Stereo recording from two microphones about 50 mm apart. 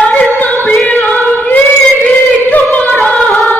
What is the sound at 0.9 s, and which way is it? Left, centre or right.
Singing, left.